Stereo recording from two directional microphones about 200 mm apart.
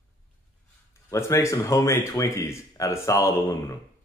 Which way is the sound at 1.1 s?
15° left (ahead or behind).